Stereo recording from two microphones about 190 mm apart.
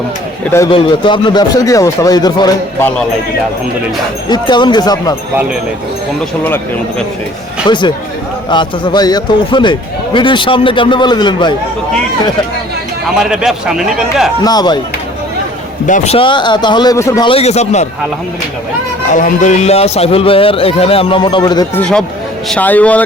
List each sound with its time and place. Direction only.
0.7 s speech: 25° left (ahead or behind)
4.3 s speech: 25° left (ahead or behind)
7.7 s speech: 25° left (ahead or behind)
13.3 s speech: 5° right (ahead or behind)
14.4 s speech: 20° left (ahead or behind)
15.9 s speech: 30° left (ahead or behind)
17.2 s a man's voice: 30° left (ahead or behind)
19.1 s a man's voice: 40° left (ahead or behind); by 21.7 s 20° left (ahead or behind)
21.8 s a man's voice: 5° left (ahead or behind)